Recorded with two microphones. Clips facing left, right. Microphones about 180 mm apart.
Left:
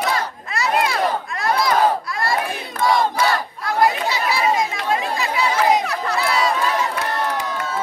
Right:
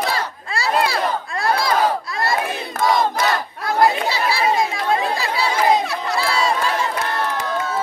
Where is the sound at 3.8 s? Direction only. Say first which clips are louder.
Right 1 dB; 30° right (ahead or behind).